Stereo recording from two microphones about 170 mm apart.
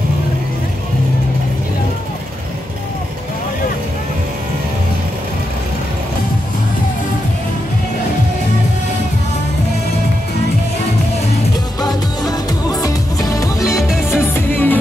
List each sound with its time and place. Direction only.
11.8 s music: 20° left (ahead or behind)